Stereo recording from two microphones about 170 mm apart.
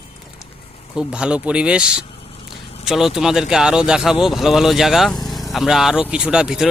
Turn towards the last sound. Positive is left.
turn(degrees=-5)  # may be behind; listen again after turning